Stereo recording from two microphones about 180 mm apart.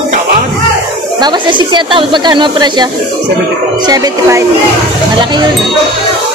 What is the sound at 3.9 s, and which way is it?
Speech, 20° right (ahead or behind).